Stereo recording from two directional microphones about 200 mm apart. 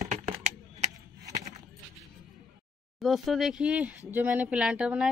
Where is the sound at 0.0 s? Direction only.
35° right (ahead or behind).